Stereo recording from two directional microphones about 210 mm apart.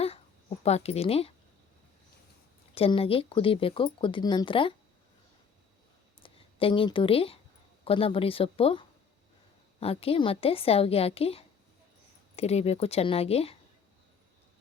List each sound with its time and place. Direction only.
0.6 s speech: 30° left (ahead or behind)
2.7 s speech: 25° left (ahead or behind)
6.2 s a woman's voice: 25° left (ahead or behind)